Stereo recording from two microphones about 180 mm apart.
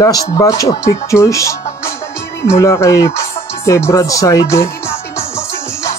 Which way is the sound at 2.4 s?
15° left (ahead or behind).